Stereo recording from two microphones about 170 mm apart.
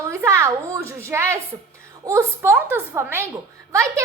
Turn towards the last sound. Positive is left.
turn(degrees=-15)  # may be behind; listen again after turning